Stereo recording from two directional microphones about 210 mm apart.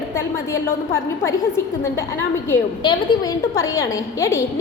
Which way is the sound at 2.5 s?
20° left (ahead or behind).